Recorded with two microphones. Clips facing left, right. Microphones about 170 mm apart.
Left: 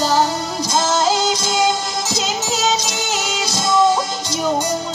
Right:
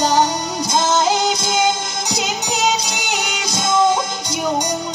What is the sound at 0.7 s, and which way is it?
Music, 20° right (ahead or behind).